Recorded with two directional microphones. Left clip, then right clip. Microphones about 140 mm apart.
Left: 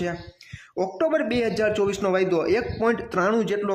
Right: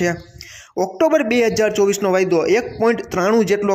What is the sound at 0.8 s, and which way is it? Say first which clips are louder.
Speech: right 7 dB; 30° right (ahead or behind).